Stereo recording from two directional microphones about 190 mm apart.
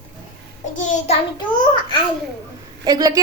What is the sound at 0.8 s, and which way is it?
Child singing, 40° left (ahead or behind).